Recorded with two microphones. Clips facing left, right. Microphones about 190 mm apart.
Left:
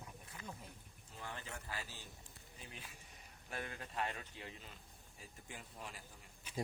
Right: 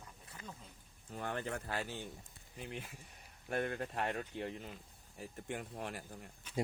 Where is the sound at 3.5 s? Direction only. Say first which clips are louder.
Right 10 dB; 55° right (ahead or behind).